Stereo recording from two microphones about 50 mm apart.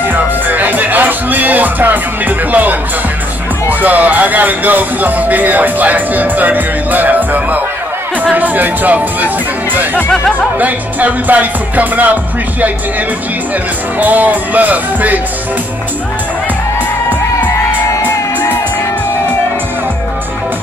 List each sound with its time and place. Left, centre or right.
0.0 s music: right
3.8 s speech: right
10.6 s speech: right
13.9 s speech: right